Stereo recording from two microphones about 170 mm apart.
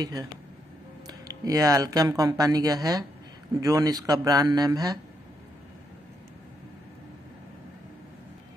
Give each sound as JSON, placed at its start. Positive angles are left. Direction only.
{"t": 0.0, "sound": "speech", "side_deg": -20}